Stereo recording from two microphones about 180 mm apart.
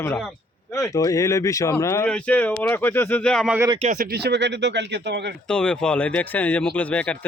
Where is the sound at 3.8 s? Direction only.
45° right (ahead or behind); by 5.3 s 70° right (ahead or behind).